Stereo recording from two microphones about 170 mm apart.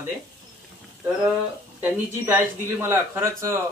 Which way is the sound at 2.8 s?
15° right (ahead or behind).